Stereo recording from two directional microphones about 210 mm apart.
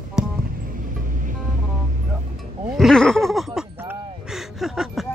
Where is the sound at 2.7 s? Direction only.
Centre (ahead or behind).